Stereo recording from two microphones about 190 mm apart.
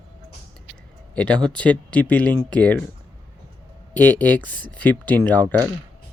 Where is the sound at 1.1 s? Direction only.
5° left (ahead or behind).